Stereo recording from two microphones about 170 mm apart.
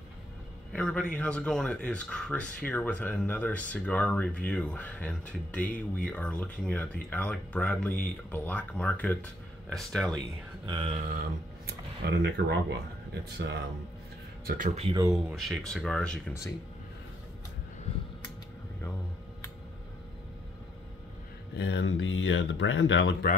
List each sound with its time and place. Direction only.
0.7 s speech: 5° left (ahead or behind)
10.7 s speech: 35° right (ahead or behind)
11.6 s speech: 75° right (ahead or behind)
14.4 s speech: 60° right (ahead or behind)
15.1 s speech: centre (ahead or behind)
21.5 s speech: 90° left